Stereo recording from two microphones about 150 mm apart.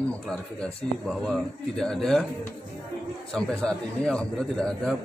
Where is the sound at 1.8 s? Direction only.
5° left (ahead or behind).